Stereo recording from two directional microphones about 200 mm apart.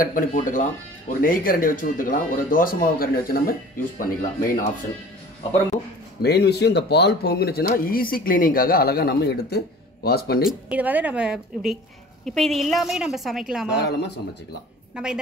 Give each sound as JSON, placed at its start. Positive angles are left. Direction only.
{"t": 0.0, "sound": "speech", "side_deg": 40}
{"t": 6.2, "sound": "speech", "side_deg": 55}
{"t": 10.7, "sound": "a woman's voice", "side_deg": -5}
{"t": 13.7, "sound": "speech", "side_deg": 55}
{"t": 14.9, "sound": "a woman's voice", "side_deg": -5}